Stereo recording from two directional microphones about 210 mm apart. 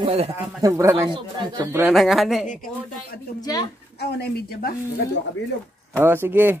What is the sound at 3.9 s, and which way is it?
Speech, 50° left (ahead or behind).